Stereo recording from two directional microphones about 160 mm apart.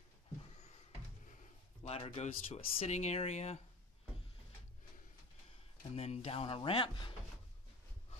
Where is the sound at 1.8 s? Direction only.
40° left (ahead or behind).